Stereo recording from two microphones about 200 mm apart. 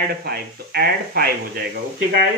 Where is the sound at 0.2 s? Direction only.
50° right (ahead or behind).